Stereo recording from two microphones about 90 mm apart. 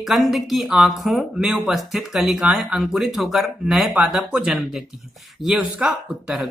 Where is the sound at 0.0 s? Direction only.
Centre (ahead or behind).